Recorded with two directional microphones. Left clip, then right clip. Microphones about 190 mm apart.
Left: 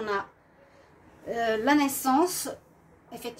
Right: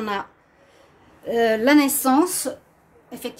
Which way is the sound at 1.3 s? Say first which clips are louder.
Right 7 dB; 50° right (ahead or behind).